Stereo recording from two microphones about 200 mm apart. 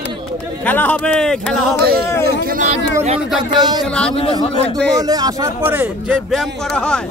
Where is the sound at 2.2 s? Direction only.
45° right (ahead or behind).